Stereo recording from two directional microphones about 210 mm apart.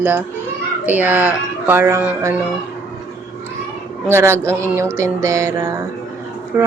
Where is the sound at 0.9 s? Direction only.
10° right (ahead or behind).